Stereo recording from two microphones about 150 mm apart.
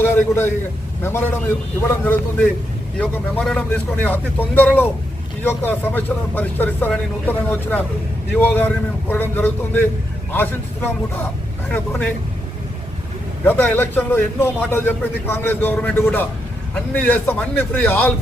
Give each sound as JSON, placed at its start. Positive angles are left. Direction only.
{"t": 0.0, "sound": "a man's voice", "side_deg": 15}
{"t": 13.4, "sound": "a man's voice", "side_deg": 15}